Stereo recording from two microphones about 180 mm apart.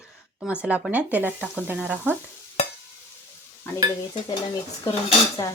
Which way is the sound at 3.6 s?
10° left (ahead or behind).